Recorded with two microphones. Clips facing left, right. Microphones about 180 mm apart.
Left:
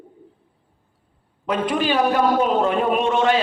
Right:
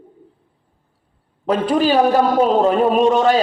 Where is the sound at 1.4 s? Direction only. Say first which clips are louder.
Right 5 dB; 35° right (ahead or behind).